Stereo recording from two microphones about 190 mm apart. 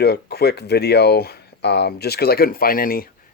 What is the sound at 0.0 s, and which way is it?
Speech, 60° left (ahead or behind).